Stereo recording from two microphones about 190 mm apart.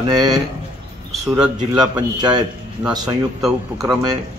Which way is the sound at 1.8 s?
20° right (ahead or behind).